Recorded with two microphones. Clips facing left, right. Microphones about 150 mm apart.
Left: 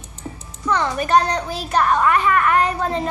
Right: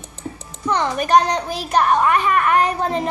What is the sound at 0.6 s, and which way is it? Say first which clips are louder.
A child's voice: right 1 dB; 20° right (ahead or behind).